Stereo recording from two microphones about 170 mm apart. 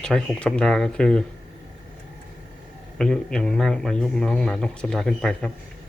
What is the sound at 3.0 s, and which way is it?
Speech, 5° left (ahead or behind).